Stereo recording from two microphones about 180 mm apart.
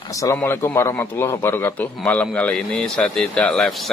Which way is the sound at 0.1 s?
15° left (ahead or behind).